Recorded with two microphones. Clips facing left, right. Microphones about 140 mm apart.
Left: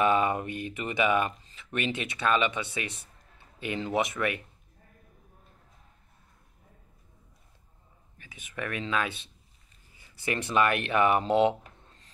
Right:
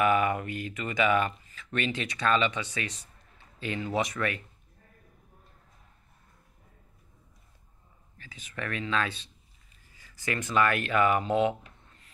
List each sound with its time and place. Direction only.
0.0 s speech: 25° left (ahead or behind)
8.2 s speech: 15° left (ahead or behind)
10.2 s speech: 20° left (ahead or behind)